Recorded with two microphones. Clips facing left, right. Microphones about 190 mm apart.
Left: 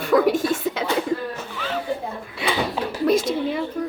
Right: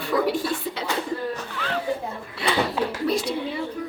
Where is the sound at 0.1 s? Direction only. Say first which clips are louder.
Left 5 dB; 50° left (ahead or behind).